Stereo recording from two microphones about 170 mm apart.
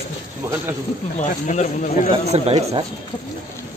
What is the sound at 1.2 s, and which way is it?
Speech, 45° left (ahead or behind).